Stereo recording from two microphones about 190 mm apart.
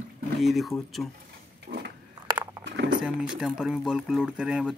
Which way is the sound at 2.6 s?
70° right (ahead or behind).